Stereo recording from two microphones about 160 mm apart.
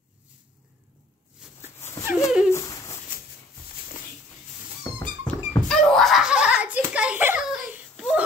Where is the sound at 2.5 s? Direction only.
20° left (ahead or behind).